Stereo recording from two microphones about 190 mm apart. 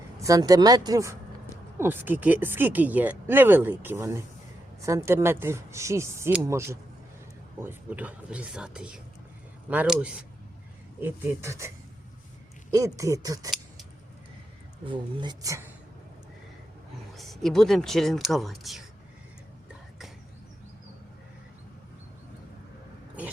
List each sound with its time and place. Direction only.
0.2 s speech: 20° right (ahead or behind)
12.7 s speech: 15° right (ahead or behind)
14.8 s speech: 25° right (ahead or behind)
17.2 s speech: centre (ahead or behind)